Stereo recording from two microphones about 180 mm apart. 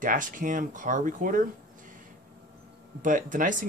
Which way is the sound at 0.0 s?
45° right (ahead or behind).